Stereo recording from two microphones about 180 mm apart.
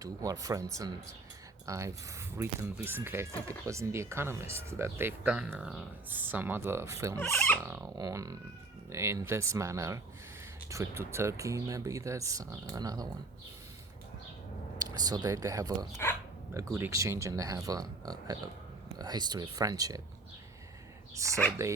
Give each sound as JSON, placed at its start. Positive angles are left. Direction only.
{"t": 0.0, "sound": "speech", "side_deg": -20}
{"t": 7.2, "sound": "speech", "side_deg": 10}
{"t": 7.6, "sound": "speech", "side_deg": -15}
{"t": 14.8, "sound": "speech", "side_deg": -20}
{"t": 21.2, "sound": "speech", "side_deg": -15}